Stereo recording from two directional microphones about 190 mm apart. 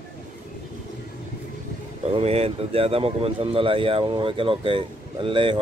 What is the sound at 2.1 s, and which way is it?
Speech, 30° right (ahead or behind).